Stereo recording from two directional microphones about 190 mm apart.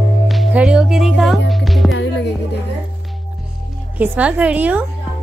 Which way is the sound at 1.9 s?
75° left (ahead or behind).